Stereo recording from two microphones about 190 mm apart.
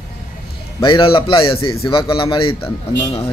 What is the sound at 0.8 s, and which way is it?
Speech, 25° left (ahead or behind).